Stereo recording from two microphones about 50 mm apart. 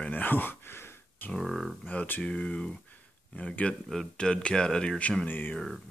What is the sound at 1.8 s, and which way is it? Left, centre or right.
A man's voice, left.